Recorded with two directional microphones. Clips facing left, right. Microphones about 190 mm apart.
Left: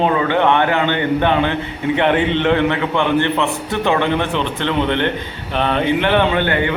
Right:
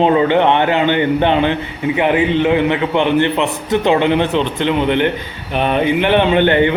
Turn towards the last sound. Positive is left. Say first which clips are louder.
# right 5 dB
turn(degrees=-20)  # may be behind; listen again after turning